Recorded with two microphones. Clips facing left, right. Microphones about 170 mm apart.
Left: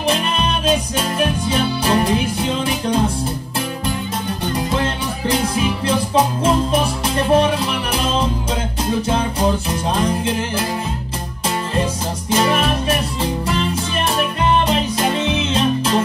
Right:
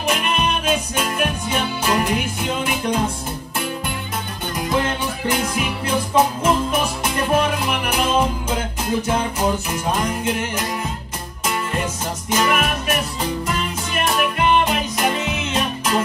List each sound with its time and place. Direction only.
0.0 s music: 30° left (ahead or behind)
5.3 s music: 30° left (ahead or behind)